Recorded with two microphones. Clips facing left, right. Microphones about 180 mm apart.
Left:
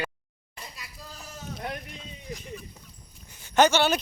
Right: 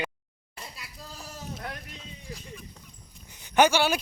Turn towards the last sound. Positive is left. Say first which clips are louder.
# left 1 dB
turn(degrees=-10)  # may be behind; listen again after turning